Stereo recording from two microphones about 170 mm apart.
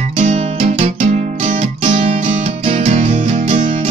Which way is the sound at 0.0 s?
40° right (ahead or behind).